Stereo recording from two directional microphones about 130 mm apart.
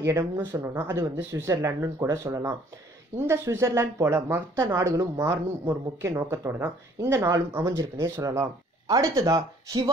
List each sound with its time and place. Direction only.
0.0 s speech: 20° right (ahead or behind)